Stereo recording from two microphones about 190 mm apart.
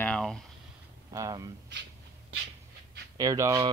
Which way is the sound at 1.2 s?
20° right (ahead or behind).